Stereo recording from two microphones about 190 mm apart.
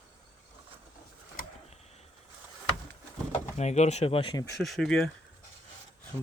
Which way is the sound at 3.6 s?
35° left (ahead or behind).